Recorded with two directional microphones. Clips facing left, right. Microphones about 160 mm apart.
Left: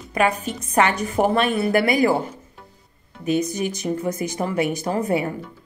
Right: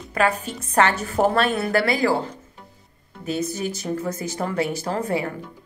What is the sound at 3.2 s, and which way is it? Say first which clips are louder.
A woman's voice: left 4 dB; 15° left (ahead or behind).